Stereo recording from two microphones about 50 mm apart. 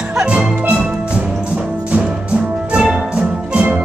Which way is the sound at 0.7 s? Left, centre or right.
Right.